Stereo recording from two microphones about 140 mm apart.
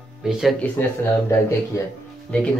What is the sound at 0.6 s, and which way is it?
Speech, 10° left (ahead or behind).